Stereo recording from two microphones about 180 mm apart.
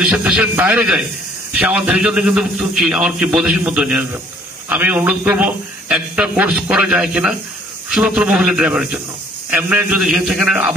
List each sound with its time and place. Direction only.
0.2 s a man's voice: 5° right (ahead or behind)